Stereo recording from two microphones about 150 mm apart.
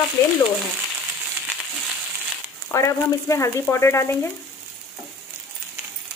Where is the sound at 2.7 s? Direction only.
20° left (ahead or behind).